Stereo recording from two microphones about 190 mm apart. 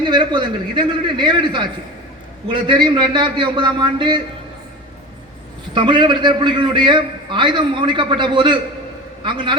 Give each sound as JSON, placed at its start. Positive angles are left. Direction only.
{"t": 0.0, "sound": "a man's voice", "side_deg": -25}
{"t": 5.7, "sound": "a man's voice", "side_deg": -25}